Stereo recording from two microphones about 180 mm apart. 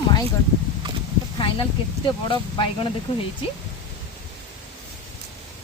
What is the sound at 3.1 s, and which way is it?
Speech, 30° left (ahead or behind).